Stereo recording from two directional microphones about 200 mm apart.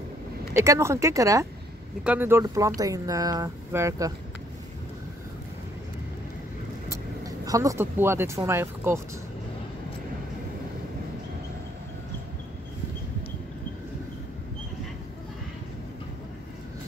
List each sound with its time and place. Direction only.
0.6 s speech: 15° right (ahead or behind)
6.9 s speech: 15° right (ahead or behind)